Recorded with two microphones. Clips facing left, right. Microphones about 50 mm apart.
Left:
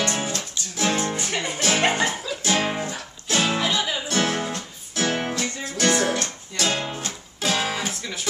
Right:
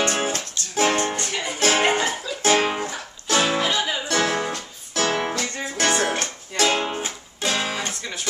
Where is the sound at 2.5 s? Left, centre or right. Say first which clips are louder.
Right 4 dB; right.